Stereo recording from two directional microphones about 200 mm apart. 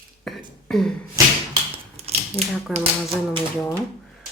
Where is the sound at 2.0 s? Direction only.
30° right (ahead or behind).